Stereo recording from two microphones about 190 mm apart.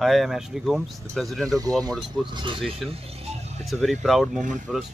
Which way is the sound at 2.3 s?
25° right (ahead or behind).